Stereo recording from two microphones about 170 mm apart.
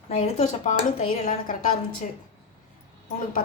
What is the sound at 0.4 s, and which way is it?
A woman's voice, 45° left (ahead or behind).